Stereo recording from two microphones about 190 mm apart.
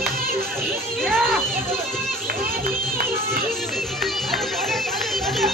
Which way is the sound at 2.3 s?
50° right (ahead or behind).